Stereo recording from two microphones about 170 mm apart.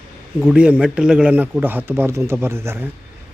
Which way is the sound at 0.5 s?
5° right (ahead or behind).